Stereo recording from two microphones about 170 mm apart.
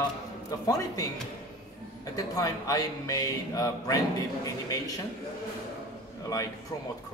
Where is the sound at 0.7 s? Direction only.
20° left (ahead or behind).